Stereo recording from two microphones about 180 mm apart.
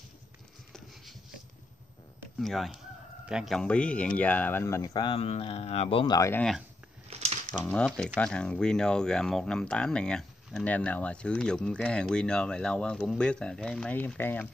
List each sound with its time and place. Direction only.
2.4 s speech: centre (ahead or behind); by 6.4 s 20° left (ahead or behind)
7.1 s a sound: 35° right (ahead or behind)
7.6 s speech: 5° left (ahead or behind)